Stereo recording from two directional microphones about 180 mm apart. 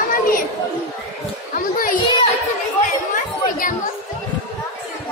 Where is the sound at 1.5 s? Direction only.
50° left (ahead or behind).